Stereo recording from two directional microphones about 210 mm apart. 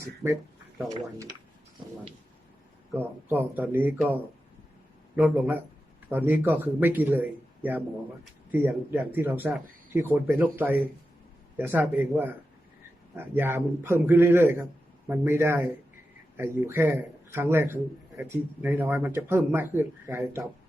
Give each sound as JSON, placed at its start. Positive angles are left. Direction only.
{"t": 0.0, "sound": "speech", "side_deg": -15}
{"t": 3.0, "sound": "speech", "side_deg": -10}